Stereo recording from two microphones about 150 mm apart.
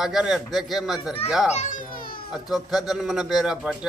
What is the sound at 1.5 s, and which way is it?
Speech, 50° left (ahead or behind).